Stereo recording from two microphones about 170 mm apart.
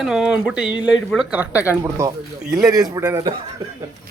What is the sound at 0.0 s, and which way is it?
Speech, 5° right (ahead or behind).